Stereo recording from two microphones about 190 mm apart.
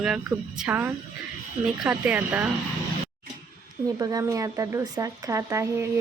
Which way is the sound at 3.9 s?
20° right (ahead or behind).